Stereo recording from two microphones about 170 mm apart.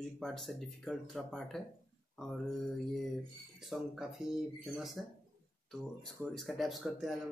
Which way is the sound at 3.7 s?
Centre (ahead or behind).